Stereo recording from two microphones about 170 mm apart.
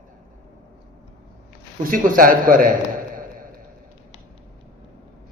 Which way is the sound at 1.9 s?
55° right (ahead or behind).